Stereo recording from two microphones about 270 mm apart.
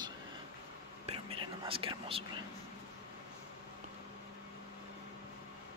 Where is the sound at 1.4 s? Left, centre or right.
Centre.